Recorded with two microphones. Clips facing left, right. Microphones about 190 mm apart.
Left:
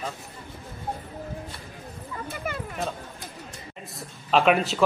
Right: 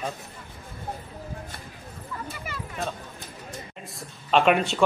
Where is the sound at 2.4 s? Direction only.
55° left (ahead or behind).